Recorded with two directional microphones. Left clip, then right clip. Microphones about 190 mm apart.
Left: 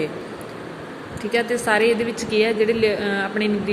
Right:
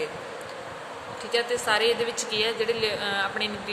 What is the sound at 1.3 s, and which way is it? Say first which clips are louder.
A woman's voice: left 5 dB; 15° left (ahead or behind).